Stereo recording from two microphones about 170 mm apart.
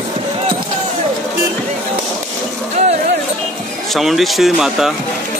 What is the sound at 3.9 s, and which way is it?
Speech, centre (ahead or behind).